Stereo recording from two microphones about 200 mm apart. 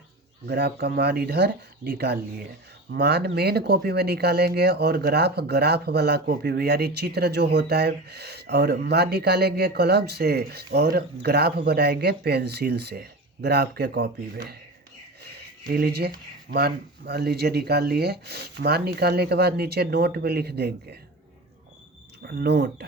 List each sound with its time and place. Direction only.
0.4 s speech: 55° right (ahead or behind)
15.6 s speech: 50° right (ahead or behind)
22.3 s speech: 55° right (ahead or behind)